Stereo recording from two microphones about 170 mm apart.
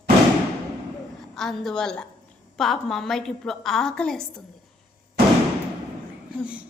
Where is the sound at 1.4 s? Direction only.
Centre (ahead or behind).